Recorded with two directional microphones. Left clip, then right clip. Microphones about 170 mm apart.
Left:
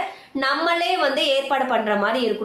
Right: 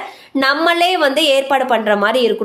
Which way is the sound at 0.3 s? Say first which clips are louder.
Right 7 dB; 60° right (ahead or behind).